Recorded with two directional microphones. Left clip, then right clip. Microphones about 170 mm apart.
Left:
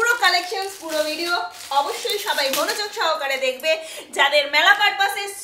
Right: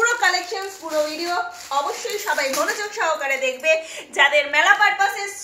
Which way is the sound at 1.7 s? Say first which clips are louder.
Left 2 dB; 15° left (ahead or behind).